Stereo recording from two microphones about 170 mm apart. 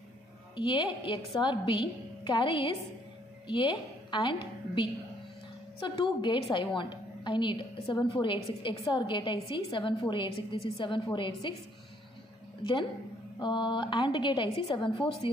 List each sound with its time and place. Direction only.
0.6 s a woman's voice: 30° left (ahead or behind)
4.1 s a woman's voice: 30° left (ahead or behind)
13.4 s a woman's voice: 25° left (ahead or behind)